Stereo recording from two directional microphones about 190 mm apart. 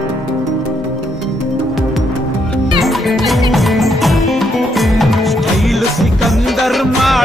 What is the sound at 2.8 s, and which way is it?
Music, centre (ahead or behind).